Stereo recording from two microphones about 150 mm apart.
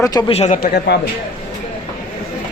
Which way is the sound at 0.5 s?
90° left.